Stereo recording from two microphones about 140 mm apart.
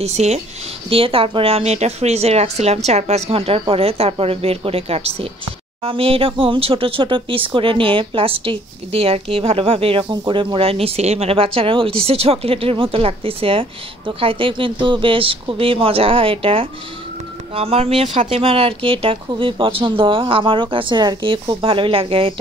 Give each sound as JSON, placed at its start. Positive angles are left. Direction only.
{"t": 0.0, "sound": "a woman's voice", "side_deg": -50}